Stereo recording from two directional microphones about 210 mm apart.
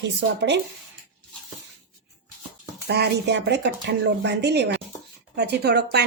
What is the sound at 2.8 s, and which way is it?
A woman's voice, 50° right (ahead or behind).